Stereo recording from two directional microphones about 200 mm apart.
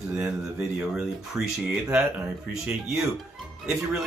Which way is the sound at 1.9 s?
5° right (ahead or behind).